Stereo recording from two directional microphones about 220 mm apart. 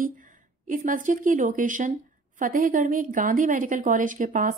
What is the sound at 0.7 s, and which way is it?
A woman's voice, 35° right (ahead or behind).